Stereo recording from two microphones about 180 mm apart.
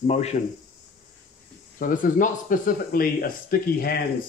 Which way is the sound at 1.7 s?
50° left (ahead or behind).